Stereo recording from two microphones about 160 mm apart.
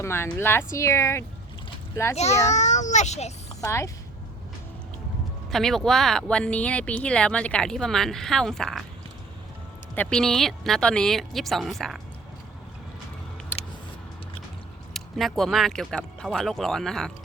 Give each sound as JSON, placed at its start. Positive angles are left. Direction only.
{"t": 0.0, "sound": "speech", "side_deg": 15}
{"t": 2.5, "sound": "a child's voice", "side_deg": 50}
{"t": 3.6, "sound": "a woman's voice", "side_deg": 20}
{"t": 5.5, "sound": "speech", "side_deg": 0}
{"t": 9.9, "sound": "speech", "side_deg": 5}
{"t": 13.5, "sound": "a sound", "side_deg": 10}
{"t": 14.9, "sound": "speech", "side_deg": 0}